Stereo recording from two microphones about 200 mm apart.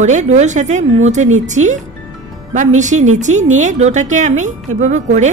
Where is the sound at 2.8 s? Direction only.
35° right (ahead or behind).